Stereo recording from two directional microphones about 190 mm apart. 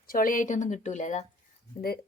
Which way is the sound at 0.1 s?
45° left (ahead or behind).